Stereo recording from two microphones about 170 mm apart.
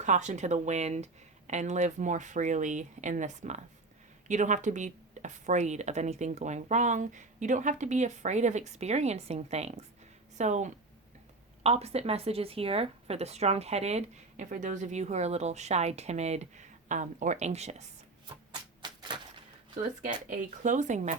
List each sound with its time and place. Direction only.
0.0 s speech: 45° right (ahead or behind)
18.8 s typewriter: 25° right (ahead or behind)
20.0 s speech: 50° right (ahead or behind)